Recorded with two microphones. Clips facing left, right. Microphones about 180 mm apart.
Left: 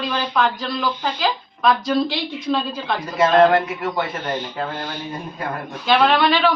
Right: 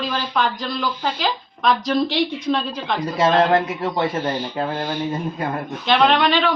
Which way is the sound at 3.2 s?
25° right (ahead or behind).